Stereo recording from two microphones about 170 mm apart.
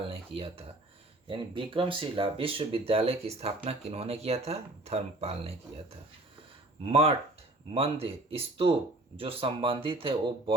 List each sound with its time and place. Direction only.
0.1 s speech: 35° right (ahead or behind)
6.8 s speech: 35° right (ahead or behind)